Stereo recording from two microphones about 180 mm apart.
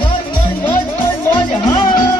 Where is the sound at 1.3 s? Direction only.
25° left (ahead or behind).